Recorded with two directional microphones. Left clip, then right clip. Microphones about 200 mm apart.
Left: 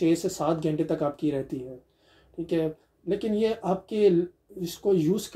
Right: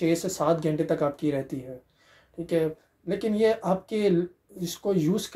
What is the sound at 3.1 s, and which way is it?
Speech, 20° right (ahead or behind).